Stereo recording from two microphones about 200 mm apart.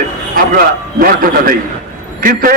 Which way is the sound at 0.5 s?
45° right (ahead or behind).